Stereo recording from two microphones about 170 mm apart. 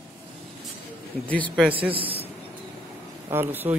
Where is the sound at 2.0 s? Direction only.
30° right (ahead or behind).